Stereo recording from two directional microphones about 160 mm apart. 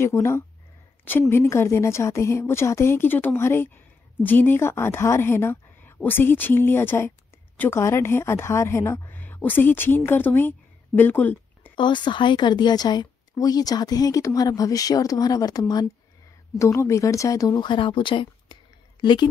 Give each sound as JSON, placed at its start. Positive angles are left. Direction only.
{"t": 0.0, "sound": "a woman's voice", "side_deg": 15}
{"t": 11.7, "sound": "a woman's voice", "side_deg": 30}